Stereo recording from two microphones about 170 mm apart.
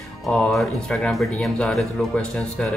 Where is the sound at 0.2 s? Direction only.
5° left (ahead or behind).